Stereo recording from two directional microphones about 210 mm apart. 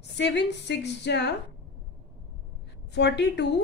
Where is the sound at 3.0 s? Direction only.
55° left (ahead or behind).